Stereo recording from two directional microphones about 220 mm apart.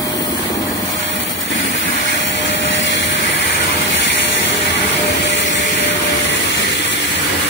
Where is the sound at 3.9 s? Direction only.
55° left (ahead or behind).